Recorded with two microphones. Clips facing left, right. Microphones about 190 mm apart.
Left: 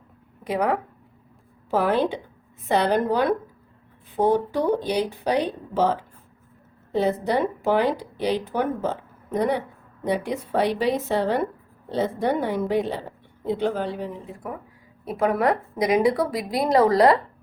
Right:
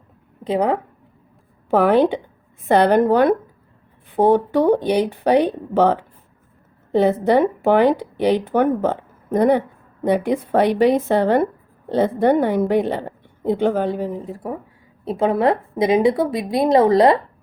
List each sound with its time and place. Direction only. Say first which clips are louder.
0.4 s a woman's voice: right 4 dB; 30° right (ahead or behind)
1.7 s a woman's voice: right 7 dB; 60° right (ahead or behind); by 14.6 s 35° right (ahead or behind)
15.0 s a woman's voice: right 4 dB; 25° right (ahead or behind)